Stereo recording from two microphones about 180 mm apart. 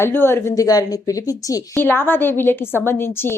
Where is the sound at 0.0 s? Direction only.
15° left (ahead or behind).